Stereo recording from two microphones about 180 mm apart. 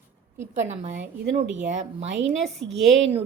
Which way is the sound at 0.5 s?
40° right (ahead or behind).